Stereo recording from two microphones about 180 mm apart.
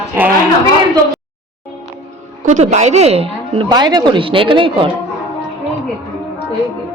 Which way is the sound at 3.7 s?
20° right (ahead or behind).